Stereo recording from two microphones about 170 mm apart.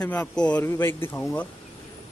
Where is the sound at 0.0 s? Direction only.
10° left (ahead or behind).